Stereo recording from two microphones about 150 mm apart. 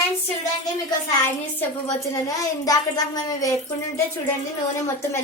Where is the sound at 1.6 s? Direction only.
20° left (ahead or behind).